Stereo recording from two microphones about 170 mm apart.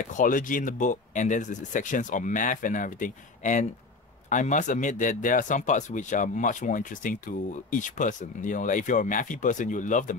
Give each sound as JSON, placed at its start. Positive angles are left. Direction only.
{"t": 0.0, "sound": "speech", "side_deg": 50}